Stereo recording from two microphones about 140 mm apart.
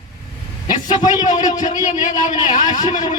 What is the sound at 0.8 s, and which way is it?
A man's voice, 60° left (ahead or behind).